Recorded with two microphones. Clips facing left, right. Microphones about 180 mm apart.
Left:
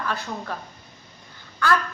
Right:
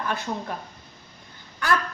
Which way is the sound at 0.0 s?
20° right (ahead or behind).